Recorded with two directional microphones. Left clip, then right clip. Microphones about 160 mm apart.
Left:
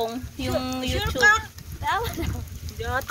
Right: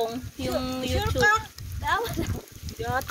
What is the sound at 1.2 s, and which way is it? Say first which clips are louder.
Speech: left 4 dB; 55° right (ahead or behind).